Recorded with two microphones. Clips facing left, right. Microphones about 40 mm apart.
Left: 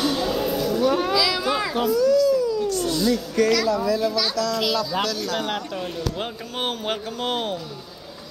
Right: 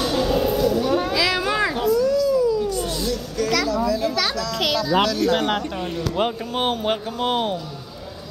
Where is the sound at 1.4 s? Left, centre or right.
Centre.